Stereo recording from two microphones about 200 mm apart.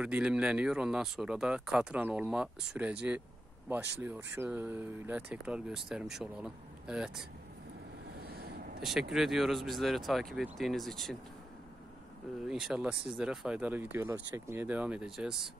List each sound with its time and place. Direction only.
0.0 s speech: 5° right (ahead or behind)
8.2 s vehicle: 50° right (ahead or behind)
9.1 s speech: centre (ahead or behind)
12.4 s speech: centre (ahead or behind)